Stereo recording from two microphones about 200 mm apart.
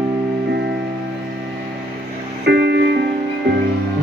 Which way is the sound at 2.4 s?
55° right (ahead or behind).